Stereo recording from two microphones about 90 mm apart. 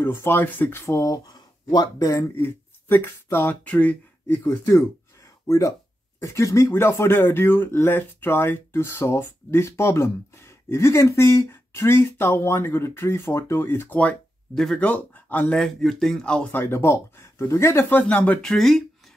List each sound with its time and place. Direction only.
0.0 s speech: 25° left (ahead or behind)
2.3 s speech: 25° left (ahead or behind)
4.3 s speech: 30° left (ahead or behind)
13.9 s speech: 10° left (ahead or behind)
14.8 s speech: 15° left (ahead or behind)
15.5 s speech: 5° left (ahead or behind)
16.5 s speech: 30° left (ahead or behind)
18.4 s speech: 5° left (ahead or behind)